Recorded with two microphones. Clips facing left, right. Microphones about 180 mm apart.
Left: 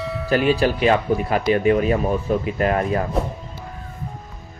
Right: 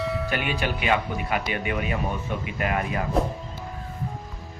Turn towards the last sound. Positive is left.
turn(degrees=35)  # may be behind; listen again after turning